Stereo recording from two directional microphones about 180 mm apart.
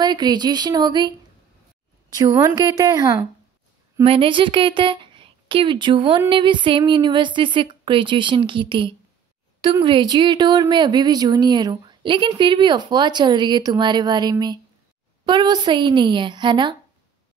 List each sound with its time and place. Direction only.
0.0 s speech: 25° right (ahead or behind)
2.1 s speech: 20° right (ahead or behind)
4.0 s speech: 30° right (ahead or behind)